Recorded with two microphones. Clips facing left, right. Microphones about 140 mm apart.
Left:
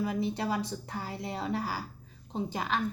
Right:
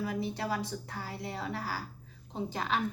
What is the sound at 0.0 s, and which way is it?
A woman's voice, 20° left (ahead or behind).